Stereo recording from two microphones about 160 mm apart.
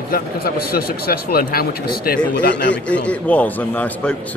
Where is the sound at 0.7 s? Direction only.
70° left (ahead or behind).